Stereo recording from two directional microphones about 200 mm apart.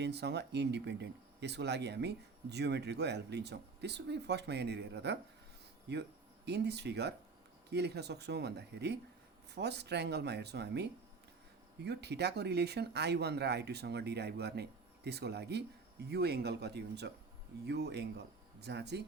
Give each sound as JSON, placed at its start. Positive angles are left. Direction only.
{"t": 0.0, "sound": "speech", "side_deg": -55}